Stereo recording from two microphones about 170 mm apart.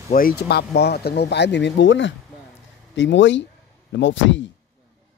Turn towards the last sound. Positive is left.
turn(degrees=90)